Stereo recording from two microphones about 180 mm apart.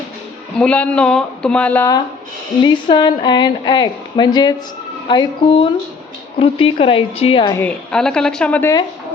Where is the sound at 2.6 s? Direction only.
25° left (ahead or behind).